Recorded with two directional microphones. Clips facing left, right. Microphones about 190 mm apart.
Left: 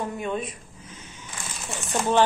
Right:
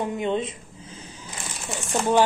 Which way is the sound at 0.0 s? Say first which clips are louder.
Right 4 dB; 20° right (ahead or behind).